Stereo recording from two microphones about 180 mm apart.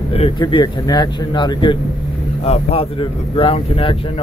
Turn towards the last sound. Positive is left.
turn(degrees=30)  # may be behind; listen again after turning